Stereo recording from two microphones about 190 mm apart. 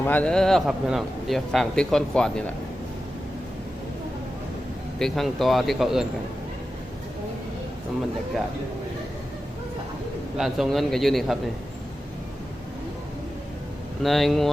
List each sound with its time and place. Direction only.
0.0 s a man's voice: 10° left (ahead or behind)
4.9 s a man's voice: centre (ahead or behind)
10.3 s a man's voice: centre (ahead or behind)
14.0 s a man's voice: centre (ahead or behind)